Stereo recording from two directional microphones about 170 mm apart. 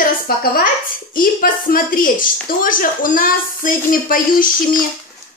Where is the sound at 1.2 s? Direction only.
55° left (ahead or behind).